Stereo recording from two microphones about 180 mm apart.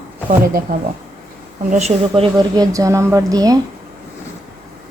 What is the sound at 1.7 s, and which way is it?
Speech, 40° right (ahead or behind).